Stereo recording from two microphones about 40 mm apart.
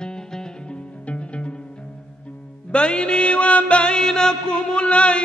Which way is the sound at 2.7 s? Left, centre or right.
Left.